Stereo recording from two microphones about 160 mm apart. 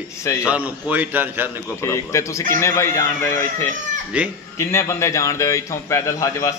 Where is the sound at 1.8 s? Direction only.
15° left (ahead or behind).